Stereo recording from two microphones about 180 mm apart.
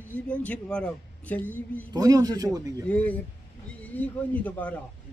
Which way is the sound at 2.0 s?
20° right (ahead or behind).